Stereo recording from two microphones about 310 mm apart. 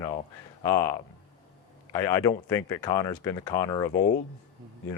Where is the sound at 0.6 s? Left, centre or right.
Centre.